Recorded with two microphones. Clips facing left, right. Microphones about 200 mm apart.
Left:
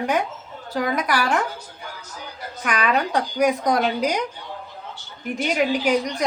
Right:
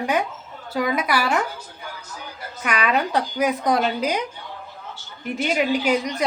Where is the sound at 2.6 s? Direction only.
10° right (ahead or behind).